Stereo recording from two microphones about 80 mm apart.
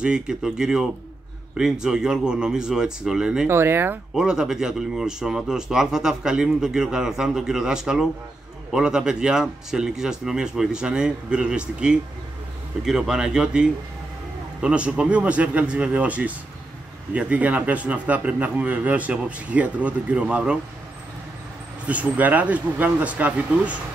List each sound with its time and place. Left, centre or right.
0.0 s speech: centre
3.4 s speech: right
4.1 s speech: centre
21.8 s speech: centre